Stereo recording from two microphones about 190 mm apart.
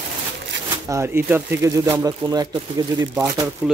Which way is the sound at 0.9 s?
15° right (ahead or behind).